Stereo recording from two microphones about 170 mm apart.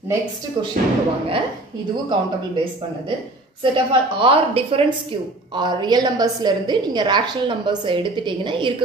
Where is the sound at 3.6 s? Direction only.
30° right (ahead or behind).